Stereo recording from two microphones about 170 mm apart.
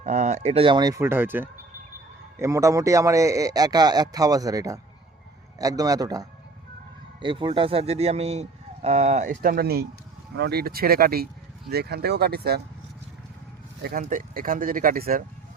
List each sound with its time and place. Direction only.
0.0 s a man's voice: 45° right (ahead or behind); by 12.6 s 70° right (ahead or behind)
13.8 s speech: 55° right (ahead or behind)